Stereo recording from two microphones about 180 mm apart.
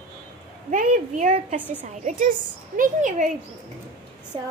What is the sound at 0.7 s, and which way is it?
A child's voice, 45° right (ahead or behind).